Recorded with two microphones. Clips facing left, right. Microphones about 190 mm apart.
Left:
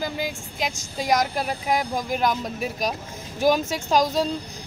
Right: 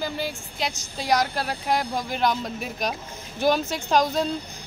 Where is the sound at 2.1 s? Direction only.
5° left (ahead or behind).